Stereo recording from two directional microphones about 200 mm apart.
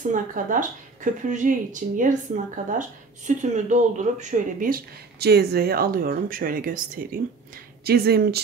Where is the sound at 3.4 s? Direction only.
40° right (ahead or behind).